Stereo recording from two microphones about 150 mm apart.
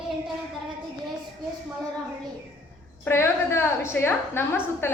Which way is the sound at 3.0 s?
15° left (ahead or behind).